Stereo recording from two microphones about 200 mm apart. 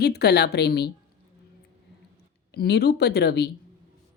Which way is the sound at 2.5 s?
55° left (ahead or behind).